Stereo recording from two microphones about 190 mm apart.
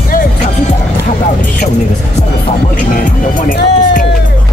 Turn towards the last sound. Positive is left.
turn(degrees=45)  # may be behind; listen again after turning